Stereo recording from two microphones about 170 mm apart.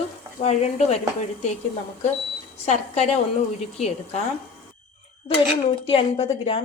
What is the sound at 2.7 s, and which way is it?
Speech, 40° left (ahead or behind).